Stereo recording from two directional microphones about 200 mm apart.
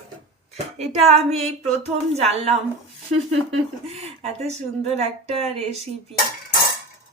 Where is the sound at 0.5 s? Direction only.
30° right (ahead or behind).